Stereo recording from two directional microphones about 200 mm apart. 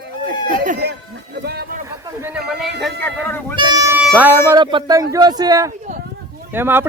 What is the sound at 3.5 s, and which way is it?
Music, 15° right (ahead or behind).